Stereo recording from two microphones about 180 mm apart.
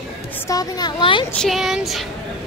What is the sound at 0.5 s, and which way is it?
Speech, 20° left (ahead or behind).